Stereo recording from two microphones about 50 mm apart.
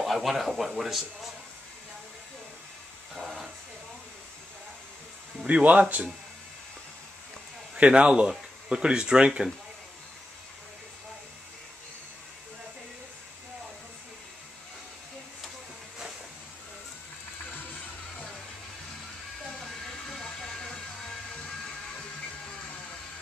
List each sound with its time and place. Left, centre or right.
0.0 s speech: centre
5.5 s speech: right
7.7 s a man's voice: right
19.6 s a sound: centre